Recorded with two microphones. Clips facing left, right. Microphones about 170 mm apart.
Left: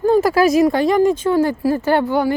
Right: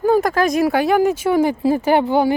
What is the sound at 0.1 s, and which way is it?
Speech, 5° left (ahead or behind).